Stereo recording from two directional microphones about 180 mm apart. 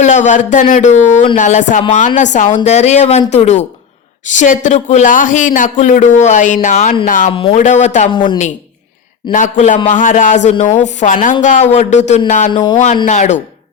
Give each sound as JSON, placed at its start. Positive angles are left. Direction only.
{"t": 0.0, "sound": "speech", "side_deg": 40}
{"t": 8.1, "sound": "a woman's voice", "side_deg": 25}
{"t": 9.3, "sound": "speech", "side_deg": 45}